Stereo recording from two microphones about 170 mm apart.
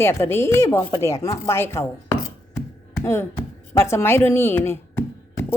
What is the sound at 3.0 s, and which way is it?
A woman's voice, 15° left (ahead or behind).